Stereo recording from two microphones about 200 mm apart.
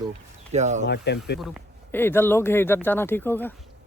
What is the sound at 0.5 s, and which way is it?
Speech, 35° right (ahead or behind).